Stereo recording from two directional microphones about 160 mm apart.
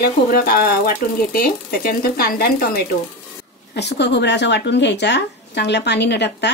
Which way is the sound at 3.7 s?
90° left.